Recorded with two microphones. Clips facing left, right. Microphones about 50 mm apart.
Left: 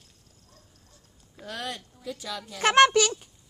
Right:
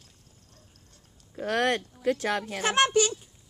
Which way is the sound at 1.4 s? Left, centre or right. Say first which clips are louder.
Right 10 dB; right.